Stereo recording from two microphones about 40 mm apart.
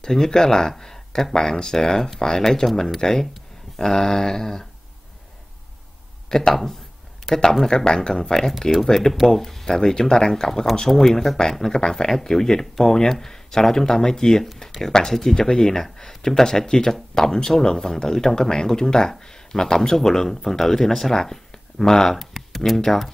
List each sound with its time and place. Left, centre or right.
0.0 s speech: centre
6.2 s speech: centre